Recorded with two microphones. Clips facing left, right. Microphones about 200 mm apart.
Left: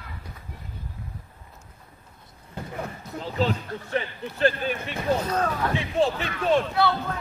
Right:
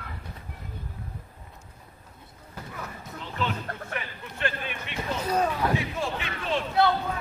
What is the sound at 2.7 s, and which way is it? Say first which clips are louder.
Speech: left 6 dB; 35° left (ahead or behind).